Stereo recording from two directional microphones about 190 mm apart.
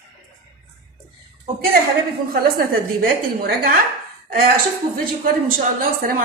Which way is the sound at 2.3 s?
50° right (ahead or behind).